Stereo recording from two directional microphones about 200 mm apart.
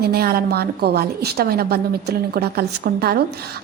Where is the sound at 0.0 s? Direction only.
50° right (ahead or behind).